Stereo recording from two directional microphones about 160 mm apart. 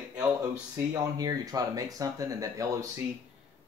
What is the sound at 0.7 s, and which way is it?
Speech, 20° right (ahead or behind).